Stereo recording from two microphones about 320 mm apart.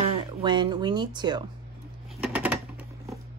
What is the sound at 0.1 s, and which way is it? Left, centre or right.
Speech, centre.